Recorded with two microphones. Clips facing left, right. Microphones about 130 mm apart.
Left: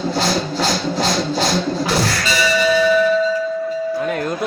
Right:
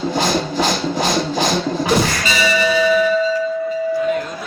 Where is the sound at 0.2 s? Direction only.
15° right (ahead or behind).